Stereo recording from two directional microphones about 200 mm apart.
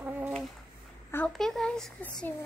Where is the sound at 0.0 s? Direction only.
5° right (ahead or behind).